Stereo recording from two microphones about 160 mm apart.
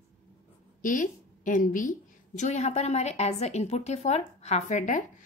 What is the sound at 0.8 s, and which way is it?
A woman's voice, 55° left (ahead or behind).